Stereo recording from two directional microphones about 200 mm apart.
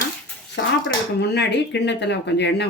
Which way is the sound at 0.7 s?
60° left (ahead or behind).